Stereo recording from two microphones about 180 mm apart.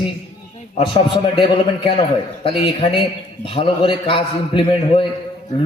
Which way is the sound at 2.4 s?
30° left (ahead or behind).